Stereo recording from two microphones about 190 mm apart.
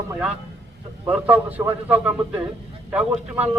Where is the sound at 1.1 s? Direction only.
10° right (ahead or behind).